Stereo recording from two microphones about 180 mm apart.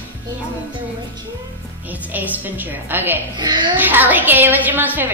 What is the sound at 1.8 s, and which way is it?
A woman's voice, 10° right (ahead or behind).